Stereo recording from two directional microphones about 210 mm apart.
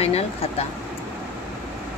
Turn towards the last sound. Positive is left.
turn(degrees=30)  # may be behind; listen again after turning